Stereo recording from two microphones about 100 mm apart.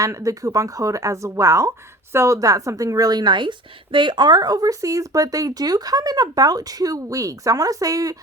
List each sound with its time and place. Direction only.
0.0 s speech: 35° right (ahead or behind)